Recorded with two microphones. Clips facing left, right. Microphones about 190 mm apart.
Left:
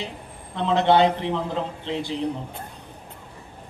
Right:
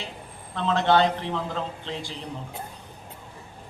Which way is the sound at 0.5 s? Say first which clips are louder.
Left 3 dB; 20° left (ahead or behind).